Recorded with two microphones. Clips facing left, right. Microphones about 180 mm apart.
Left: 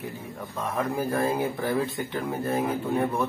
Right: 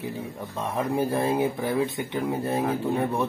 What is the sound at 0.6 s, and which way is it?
Speech, 30° right (ahead or behind).